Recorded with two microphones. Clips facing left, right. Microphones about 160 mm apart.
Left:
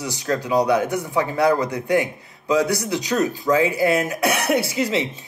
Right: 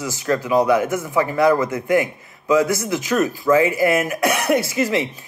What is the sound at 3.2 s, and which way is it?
Speech, 20° left (ahead or behind).